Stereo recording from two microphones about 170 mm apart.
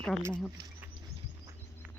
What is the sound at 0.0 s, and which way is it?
Speech, 5° left (ahead or behind).